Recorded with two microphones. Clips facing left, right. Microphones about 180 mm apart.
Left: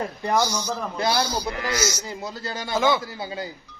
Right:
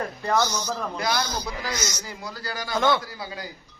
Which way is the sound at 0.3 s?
10° left (ahead or behind).